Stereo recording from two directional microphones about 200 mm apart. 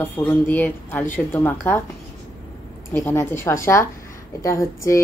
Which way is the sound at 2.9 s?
15° left (ahead or behind).